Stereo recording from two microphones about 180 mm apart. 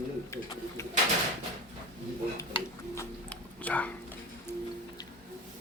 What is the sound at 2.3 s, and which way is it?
Whispering, 15° left (ahead or behind).